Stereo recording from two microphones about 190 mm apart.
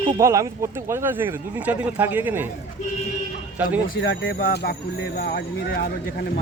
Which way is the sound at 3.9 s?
70° left (ahead or behind).